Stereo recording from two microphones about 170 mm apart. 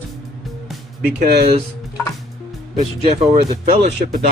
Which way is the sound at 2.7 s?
45° right (ahead or behind).